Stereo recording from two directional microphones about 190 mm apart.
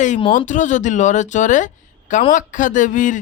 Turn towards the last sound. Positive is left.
turn(degrees=40)  # may be behind; listen again after turning